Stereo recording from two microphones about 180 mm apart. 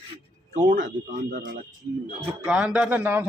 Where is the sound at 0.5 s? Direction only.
45° right (ahead or behind).